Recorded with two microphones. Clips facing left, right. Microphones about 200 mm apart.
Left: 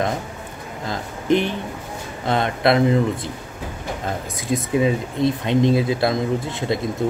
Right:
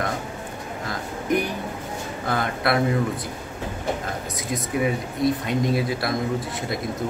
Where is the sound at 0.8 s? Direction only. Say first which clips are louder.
Left 6 dB; 25° left (ahead or behind).